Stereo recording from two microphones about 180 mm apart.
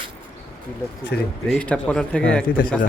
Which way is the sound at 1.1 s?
65° left (ahead or behind).